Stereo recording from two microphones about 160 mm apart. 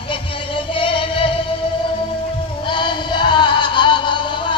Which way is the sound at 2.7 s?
30° left (ahead or behind).